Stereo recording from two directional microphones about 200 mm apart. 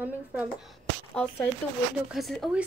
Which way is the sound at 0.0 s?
10° right (ahead or behind).